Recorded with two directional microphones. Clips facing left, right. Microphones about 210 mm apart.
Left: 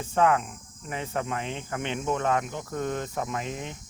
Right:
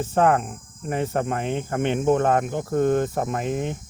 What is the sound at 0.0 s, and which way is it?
Speech, 45° right (ahead or behind).